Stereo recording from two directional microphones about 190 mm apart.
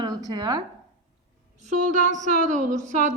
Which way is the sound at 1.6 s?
40° right (ahead or behind).